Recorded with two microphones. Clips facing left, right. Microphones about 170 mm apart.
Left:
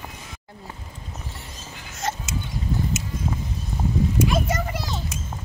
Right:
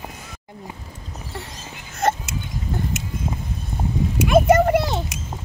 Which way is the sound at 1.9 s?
55° right (ahead or behind).